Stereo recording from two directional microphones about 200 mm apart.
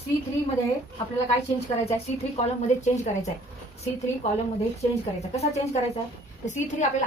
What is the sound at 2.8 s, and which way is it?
Speech, 35° left (ahead or behind).